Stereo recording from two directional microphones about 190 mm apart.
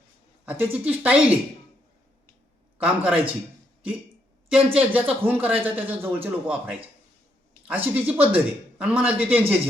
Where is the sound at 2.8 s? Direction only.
5° right (ahead or behind).